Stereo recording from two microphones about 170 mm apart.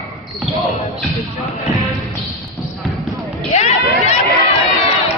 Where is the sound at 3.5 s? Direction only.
40° left (ahead or behind).